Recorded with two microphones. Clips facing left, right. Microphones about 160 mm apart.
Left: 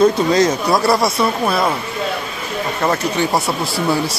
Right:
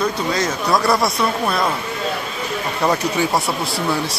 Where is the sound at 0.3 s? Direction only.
40° left (ahead or behind).